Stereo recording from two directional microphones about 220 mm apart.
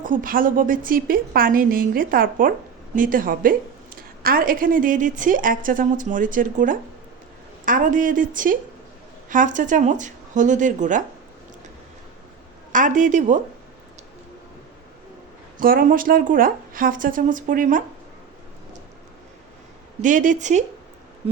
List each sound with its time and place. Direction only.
0.0 s a woman's voice: 40° right (ahead or behind)
12.7 s a woman's voice: 35° right (ahead or behind)
15.5 s a woman's voice: 40° right (ahead or behind)
20.0 s a woman's voice: 35° right (ahead or behind)